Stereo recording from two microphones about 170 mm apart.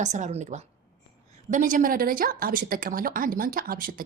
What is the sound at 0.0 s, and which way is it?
A woman's voice, 45° right (ahead or behind).